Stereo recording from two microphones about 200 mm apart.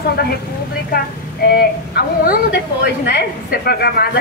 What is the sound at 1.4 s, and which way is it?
A woman's voice, 50° left (ahead or behind).